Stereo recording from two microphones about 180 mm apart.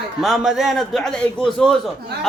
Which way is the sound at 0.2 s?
Centre (ahead or behind).